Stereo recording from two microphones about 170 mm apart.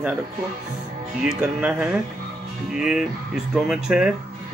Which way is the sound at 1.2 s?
5° right (ahead or behind).